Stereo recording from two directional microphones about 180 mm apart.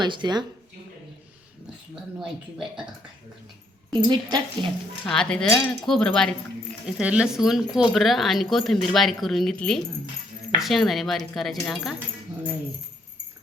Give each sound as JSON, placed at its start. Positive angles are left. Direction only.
{"t": 0.0, "sound": "a woman's voice", "side_deg": -25}
{"t": 2.1, "sound": "speech", "side_deg": -5}
{"t": 3.9, "sound": "a woman's voice", "side_deg": -25}
{"t": 5.0, "sound": "speech", "side_deg": 5}